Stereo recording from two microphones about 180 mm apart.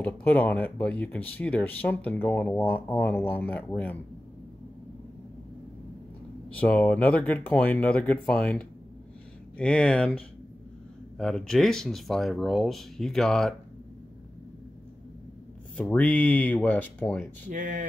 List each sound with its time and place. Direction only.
0.0 s speech: 10° left (ahead or behind)
6.5 s speech: 10° left (ahead or behind)
11.1 s speech: centre (ahead or behind)
15.7 s speech: 5° left (ahead or behind)
17.5 s speech: 45° right (ahead or behind)